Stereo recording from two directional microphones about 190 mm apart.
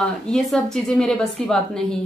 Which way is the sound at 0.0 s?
5° left (ahead or behind).